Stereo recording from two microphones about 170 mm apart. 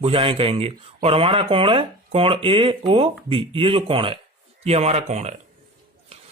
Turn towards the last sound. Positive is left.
turn(degrees=-40)  # may be behind; listen again after turning